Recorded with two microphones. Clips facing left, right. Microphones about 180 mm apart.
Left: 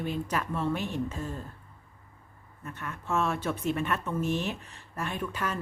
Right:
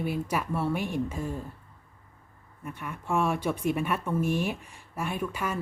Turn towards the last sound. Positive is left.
turn(degrees=-10)  # may be behind; listen again after turning